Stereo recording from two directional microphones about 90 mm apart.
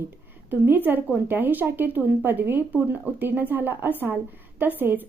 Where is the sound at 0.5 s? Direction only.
20° right (ahead or behind).